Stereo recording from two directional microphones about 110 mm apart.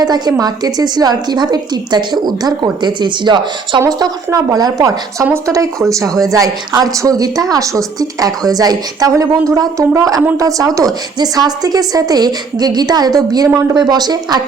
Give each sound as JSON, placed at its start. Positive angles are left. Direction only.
{"t": 0.0, "sound": "a woman's voice", "side_deg": -35}
{"t": 3.8, "sound": "a woman's voice", "side_deg": -30}